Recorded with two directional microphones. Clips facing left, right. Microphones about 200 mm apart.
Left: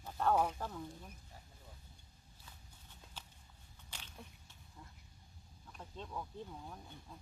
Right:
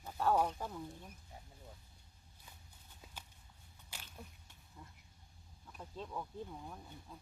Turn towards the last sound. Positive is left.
turn(degrees=-5)  # may be behind; listen again after turning